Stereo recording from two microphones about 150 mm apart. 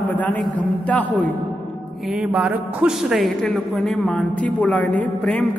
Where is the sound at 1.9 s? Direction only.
5° right (ahead or behind).